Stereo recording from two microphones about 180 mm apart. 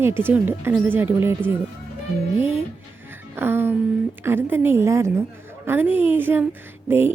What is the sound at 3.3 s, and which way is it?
Speech, 10° right (ahead or behind).